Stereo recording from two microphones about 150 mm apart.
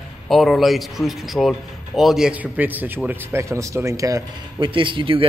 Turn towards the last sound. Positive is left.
turn(degrees=-35)  # may be behind; listen again after turning